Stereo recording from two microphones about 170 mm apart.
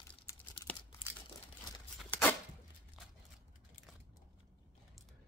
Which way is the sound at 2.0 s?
10° left (ahead or behind).